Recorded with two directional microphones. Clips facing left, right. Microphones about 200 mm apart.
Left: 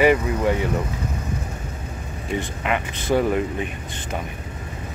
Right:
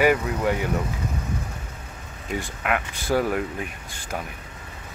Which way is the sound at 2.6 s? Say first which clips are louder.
Left 2 dB; 5° right (ahead or behind).